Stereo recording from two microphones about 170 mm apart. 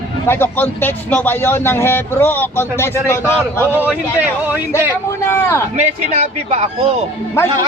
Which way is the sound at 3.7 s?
10° right (ahead or behind).